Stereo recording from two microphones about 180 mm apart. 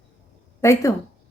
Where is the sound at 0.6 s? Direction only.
15° left (ahead or behind).